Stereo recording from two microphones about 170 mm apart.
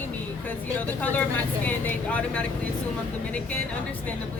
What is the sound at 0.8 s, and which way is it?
Speech, 10° left (ahead or behind).